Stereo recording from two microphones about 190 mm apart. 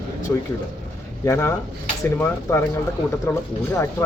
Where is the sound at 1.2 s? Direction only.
15° left (ahead or behind).